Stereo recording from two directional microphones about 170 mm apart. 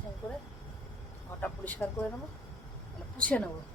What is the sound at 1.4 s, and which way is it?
Speech, 10° left (ahead or behind).